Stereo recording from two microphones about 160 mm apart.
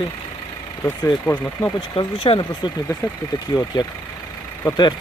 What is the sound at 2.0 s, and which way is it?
Speech, 30° left (ahead or behind).